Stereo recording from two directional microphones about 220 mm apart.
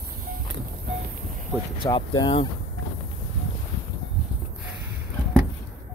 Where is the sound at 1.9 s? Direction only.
20° left (ahead or behind).